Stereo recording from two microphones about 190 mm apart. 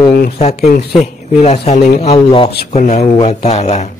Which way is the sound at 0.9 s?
35° left (ahead or behind).